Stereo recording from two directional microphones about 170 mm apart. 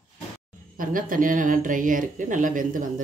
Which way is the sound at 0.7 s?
55° right (ahead or behind).